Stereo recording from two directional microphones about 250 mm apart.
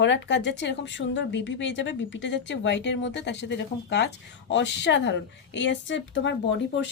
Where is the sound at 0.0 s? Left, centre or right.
Left.